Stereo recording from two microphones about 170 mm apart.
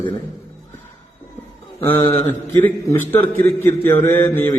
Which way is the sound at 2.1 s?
10° left (ahead or behind).